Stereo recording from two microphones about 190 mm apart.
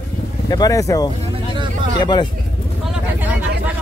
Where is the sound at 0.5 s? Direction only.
20° left (ahead or behind).